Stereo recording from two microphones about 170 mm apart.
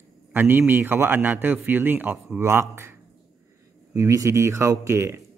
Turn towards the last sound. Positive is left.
turn(degrees=-15)  # may be behind; listen again after turning